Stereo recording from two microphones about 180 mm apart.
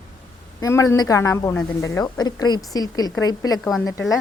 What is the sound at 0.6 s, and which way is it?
Speech, 15° left (ahead or behind).